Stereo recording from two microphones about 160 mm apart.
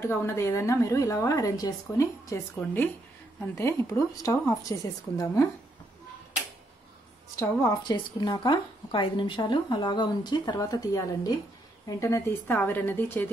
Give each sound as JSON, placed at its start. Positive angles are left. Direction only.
{"t": 0.0, "sound": "speech", "side_deg": 15}
{"t": 7.3, "sound": "a woman's voice", "side_deg": 20}